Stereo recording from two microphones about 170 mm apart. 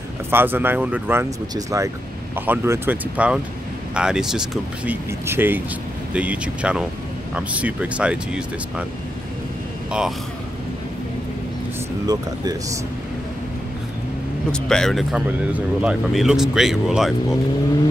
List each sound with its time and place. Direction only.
0.3 s speech: 10° right (ahead or behind)
9.8 s speech: 5° right (ahead or behind)
12.1 s speech: 20° right (ahead or behind)
14.5 s speech: 5° left (ahead or behind)